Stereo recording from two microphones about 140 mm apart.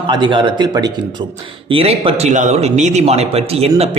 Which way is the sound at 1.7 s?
40° right (ahead or behind).